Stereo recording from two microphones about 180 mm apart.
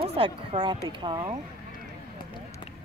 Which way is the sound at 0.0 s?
30° right (ahead or behind).